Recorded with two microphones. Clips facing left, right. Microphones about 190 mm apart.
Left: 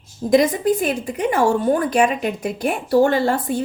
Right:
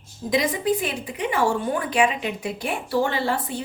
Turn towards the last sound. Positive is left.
turn(degrees=45)  # may be behind; listen again after turning